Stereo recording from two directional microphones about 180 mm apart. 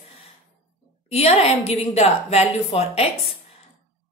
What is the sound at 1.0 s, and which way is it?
A woman's voice, 35° left (ahead or behind).